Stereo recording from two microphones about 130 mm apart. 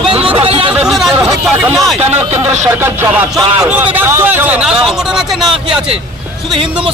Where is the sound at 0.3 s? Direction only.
45° right (ahead or behind).